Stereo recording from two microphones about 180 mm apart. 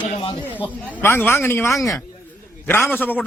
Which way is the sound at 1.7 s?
Centre (ahead or behind).